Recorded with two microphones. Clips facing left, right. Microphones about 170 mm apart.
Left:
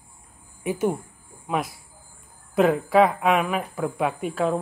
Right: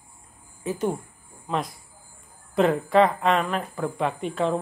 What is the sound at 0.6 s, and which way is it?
A woman's voice, 15° left (ahead or behind).